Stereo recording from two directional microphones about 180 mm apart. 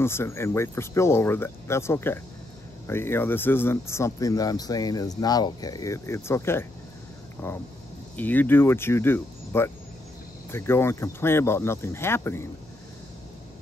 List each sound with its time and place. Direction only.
0.0 s speech: 15° left (ahead or behind)
8.2 s speech: 10° left (ahead or behind)